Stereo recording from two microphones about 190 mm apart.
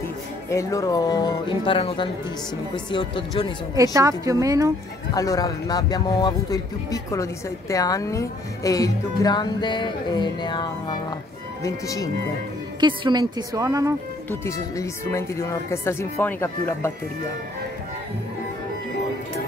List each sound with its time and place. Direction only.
0.5 s speech: 15° left (ahead or behind)
3.7 s a woman's voice: 15° right (ahead or behind)
5.1 s speech: 20° left (ahead or behind)
12.8 s a woman's voice: 25° right (ahead or behind)
14.3 s speech: 15° left (ahead or behind)